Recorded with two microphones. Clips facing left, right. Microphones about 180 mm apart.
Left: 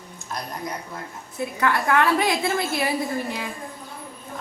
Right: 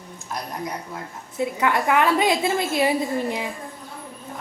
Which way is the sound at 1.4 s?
20° right (ahead or behind).